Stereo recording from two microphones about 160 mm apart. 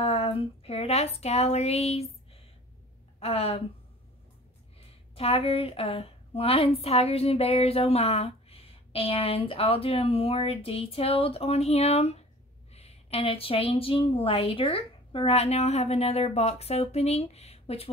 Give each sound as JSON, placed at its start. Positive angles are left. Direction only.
{"t": 0.0, "sound": "speech", "side_deg": 35}
{"t": 3.2, "sound": "speech", "side_deg": 40}
{"t": 4.7, "sound": "speech", "side_deg": 40}